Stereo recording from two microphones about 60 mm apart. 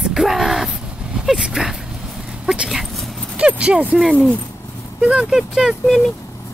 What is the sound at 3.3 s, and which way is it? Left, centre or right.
Speech, centre.